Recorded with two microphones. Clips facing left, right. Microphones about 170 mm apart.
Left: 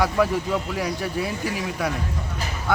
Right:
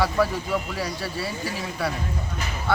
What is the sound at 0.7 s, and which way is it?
Speech, 15° left (ahead or behind).